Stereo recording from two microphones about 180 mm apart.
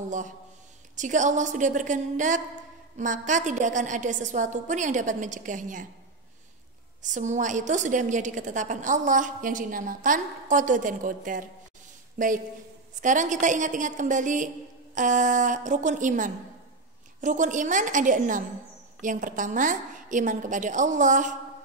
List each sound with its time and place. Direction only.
0.9 s a woman's voice: 45° right (ahead or behind)
7.0 s a woman's voice: 45° right (ahead or behind)